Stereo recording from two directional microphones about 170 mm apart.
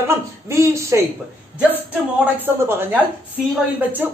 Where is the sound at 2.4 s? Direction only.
10° right (ahead or behind).